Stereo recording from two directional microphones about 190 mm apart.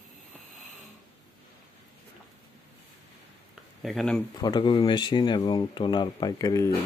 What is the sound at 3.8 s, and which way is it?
Speech, centre (ahead or behind).